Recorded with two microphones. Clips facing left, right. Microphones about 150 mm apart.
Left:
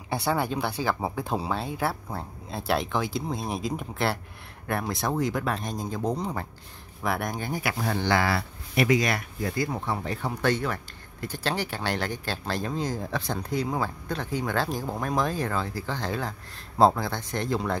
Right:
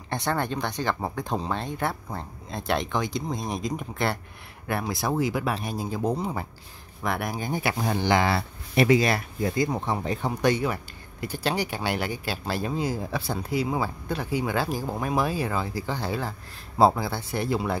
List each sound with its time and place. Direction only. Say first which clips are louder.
0.1 s speech: left 1 dB; 10° left (ahead or behind)
7.5 s speech: right 3 dB; 25° right (ahead or behind)